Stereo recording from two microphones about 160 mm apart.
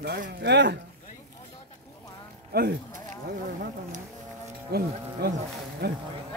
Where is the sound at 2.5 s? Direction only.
85° right.